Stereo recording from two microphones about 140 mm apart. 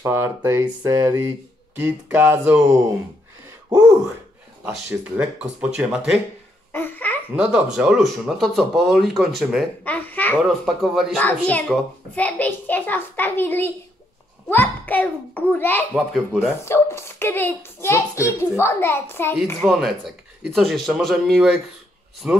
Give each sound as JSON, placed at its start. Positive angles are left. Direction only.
{"t": 0.0, "sound": "speech", "side_deg": -20}
{"t": 4.6, "sound": "speech", "side_deg": -10}
{"t": 6.7, "sound": "laughter", "side_deg": 15}
{"t": 7.7, "sound": "speech", "side_deg": -5}
{"t": 10.6, "sound": "speech", "side_deg": 0}
{"t": 11.2, "sound": "a child's voice", "side_deg": 10}
{"t": 16.1, "sound": "speech", "side_deg": 0}
{"t": 16.6, "sound": "a child's voice", "side_deg": 20}
{"t": 19.6, "sound": "speech", "side_deg": 0}